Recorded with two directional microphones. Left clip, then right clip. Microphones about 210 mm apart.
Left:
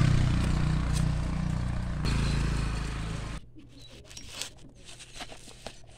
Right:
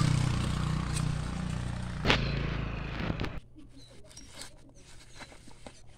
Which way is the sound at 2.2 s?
35° left (ahead or behind).